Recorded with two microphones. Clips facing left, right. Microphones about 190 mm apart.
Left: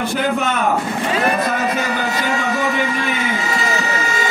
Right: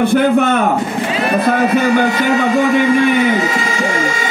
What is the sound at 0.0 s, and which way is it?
Speech, 55° right (ahead or behind).